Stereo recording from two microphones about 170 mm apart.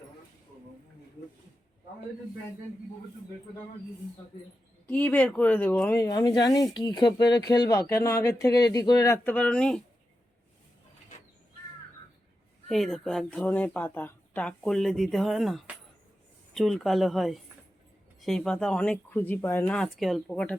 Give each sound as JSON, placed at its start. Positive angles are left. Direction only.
{"t": 4.9, "sound": "speech", "side_deg": 10}
{"t": 6.0, "sound": "speech", "side_deg": 20}
{"t": 12.6, "sound": "speech", "side_deg": 0}